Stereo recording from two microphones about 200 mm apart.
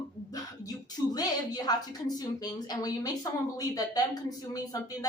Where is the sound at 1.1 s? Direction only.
20° left (ahead or behind).